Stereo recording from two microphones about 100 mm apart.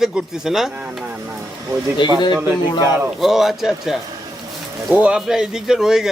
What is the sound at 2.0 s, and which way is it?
Speech, 55° left (ahead or behind).